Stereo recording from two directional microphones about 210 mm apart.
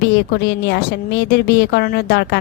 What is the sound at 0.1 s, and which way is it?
A woman's voice, 55° left (ahead or behind).